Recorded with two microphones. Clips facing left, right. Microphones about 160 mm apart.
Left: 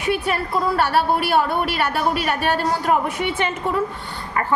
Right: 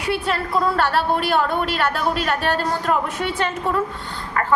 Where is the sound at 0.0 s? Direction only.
15° left (ahead or behind).